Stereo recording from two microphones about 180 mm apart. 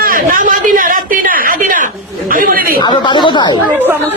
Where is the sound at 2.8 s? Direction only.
25° left (ahead or behind).